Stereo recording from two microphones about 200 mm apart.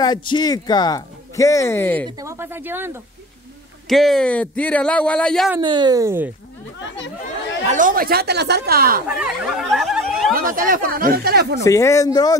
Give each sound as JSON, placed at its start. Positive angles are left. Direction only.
{"t": 0.0, "sound": "speech", "side_deg": 20}
{"t": 2.0, "sound": "speech", "side_deg": -15}
{"t": 3.9, "sound": "speech", "side_deg": 0}
{"t": 5.6, "sound": "speech", "side_deg": -25}
{"t": 7.6, "sound": "speech", "side_deg": -40}
{"t": 9.0, "sound": "speech", "side_deg": -5}
{"t": 10.3, "sound": "speech", "side_deg": -45}
{"t": 11.6, "sound": "speech", "side_deg": 15}